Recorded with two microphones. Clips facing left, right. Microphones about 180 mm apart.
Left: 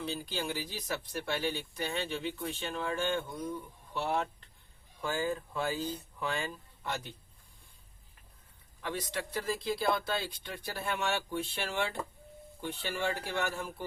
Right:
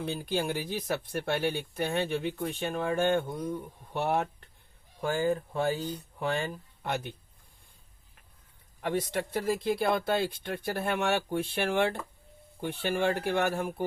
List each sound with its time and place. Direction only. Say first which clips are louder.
0.0 s speech: right 5 dB; 55° right (ahead or behind)
8.8 s speech: right 7 dB; 55° right (ahead or behind)